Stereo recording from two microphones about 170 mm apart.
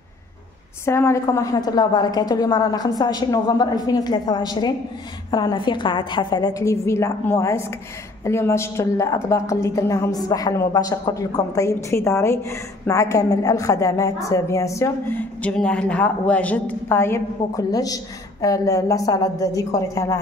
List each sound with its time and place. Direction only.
0.8 s a woman's voice: 15° left (ahead or behind)